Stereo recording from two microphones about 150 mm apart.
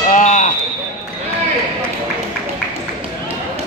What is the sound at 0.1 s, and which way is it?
Basketball bounce, 55° left (ahead or behind).